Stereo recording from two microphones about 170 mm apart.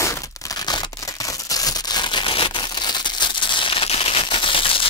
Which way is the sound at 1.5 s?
25° left (ahead or behind).